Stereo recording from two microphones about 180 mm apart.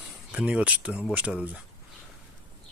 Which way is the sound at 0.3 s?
5° right (ahead or behind).